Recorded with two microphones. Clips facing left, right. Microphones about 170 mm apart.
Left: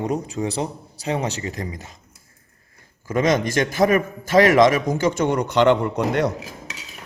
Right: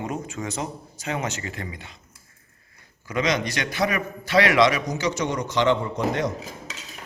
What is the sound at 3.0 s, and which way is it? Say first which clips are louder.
A man's voice: left 5 dB; 45° left (ahead or behind).